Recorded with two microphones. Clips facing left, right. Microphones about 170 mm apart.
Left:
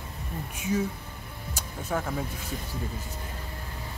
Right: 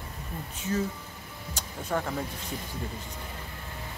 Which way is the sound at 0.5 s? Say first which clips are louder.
Left 2 dB; 10° left (ahead or behind).